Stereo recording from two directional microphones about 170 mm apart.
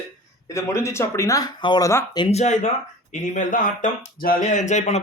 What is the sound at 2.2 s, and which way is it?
Speech, 40° left (ahead or behind).